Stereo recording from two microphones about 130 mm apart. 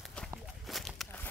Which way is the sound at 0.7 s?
Centre (ahead or behind).